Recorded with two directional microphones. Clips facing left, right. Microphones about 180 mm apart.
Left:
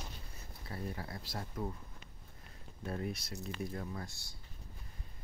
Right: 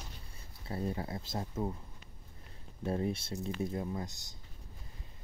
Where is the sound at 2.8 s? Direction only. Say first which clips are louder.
Right 6 dB; 25° right (ahead or behind).